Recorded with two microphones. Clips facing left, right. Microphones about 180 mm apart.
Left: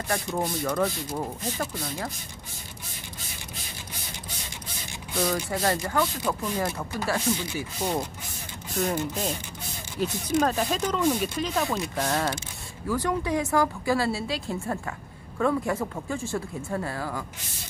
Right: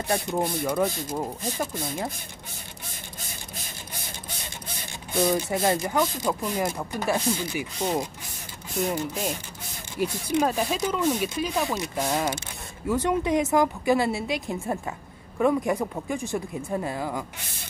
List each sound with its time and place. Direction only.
0.1 s speech: 15° right (ahead or behind)
5.1 s speech: 20° right (ahead or behind)
10.0 s speech: 10° right (ahead or behind)